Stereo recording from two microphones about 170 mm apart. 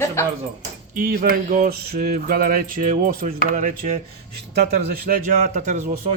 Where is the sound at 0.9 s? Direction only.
55° right (ahead or behind).